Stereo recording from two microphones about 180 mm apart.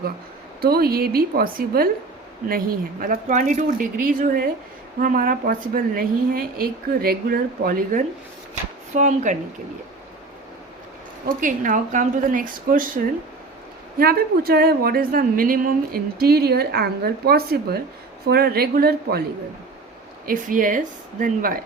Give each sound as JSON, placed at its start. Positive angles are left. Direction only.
{"t": 0.6, "sound": "a woman's voice", "side_deg": -60}
{"t": 8.9, "sound": "a woman's voice", "side_deg": -40}
{"t": 11.3, "sound": "a woman's voice", "side_deg": -45}
{"t": 14.0, "sound": "a woman's voice", "side_deg": -55}
{"t": 20.2, "sound": "a woman's voice", "side_deg": -50}